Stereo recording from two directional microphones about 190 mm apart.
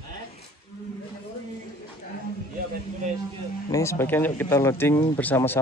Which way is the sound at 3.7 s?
15° left (ahead or behind).